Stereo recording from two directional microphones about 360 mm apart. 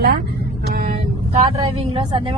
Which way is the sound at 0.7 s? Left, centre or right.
Right.